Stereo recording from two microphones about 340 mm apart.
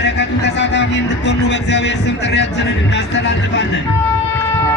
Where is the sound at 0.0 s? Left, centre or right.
Left.